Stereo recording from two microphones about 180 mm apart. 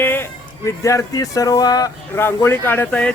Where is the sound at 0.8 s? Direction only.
20° left (ahead or behind).